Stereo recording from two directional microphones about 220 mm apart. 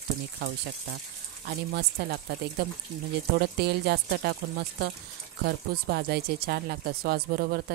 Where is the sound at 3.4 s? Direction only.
45° right (ahead or behind).